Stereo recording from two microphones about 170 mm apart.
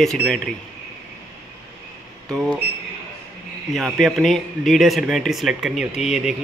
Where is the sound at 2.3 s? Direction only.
5° left (ahead or behind).